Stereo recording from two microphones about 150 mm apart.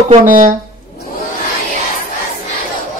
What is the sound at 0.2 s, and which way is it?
Speech, 65° right (ahead or behind).